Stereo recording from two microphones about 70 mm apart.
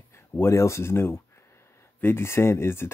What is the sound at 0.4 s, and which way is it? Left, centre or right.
Speech, left.